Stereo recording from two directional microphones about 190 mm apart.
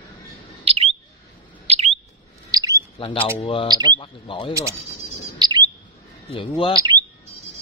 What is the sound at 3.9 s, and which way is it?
Speech, 25° left (ahead or behind).